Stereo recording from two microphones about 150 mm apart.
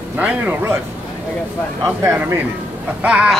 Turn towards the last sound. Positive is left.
turn(degrees=-10)  # may be behind; listen again after turning